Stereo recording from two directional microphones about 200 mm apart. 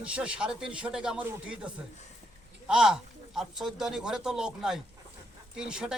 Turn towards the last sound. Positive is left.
turn(degrees=-5)  # may be behind; listen again after turning